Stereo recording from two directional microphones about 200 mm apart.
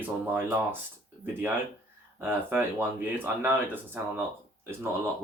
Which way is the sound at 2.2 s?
10° right (ahead or behind).